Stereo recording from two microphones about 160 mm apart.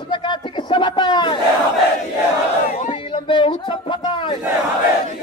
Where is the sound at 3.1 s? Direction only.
30° left (ahead or behind).